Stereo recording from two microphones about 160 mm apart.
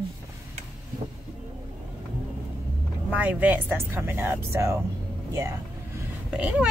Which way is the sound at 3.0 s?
10° right (ahead or behind).